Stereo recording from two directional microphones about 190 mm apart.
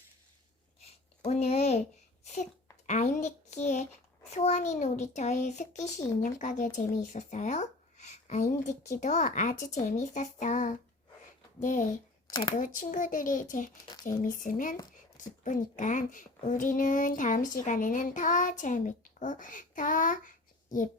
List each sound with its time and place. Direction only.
1.2 s speech: 35° left (ahead or behind)
2.2 s a sound: 40° left (ahead or behind)
4.3 s speech: 35° left (ahead or behind)